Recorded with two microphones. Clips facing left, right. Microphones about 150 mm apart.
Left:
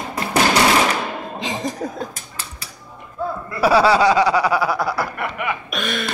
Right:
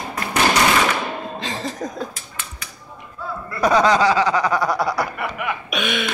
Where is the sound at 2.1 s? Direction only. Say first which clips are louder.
Left 1 dB; 35° left (ahead or behind).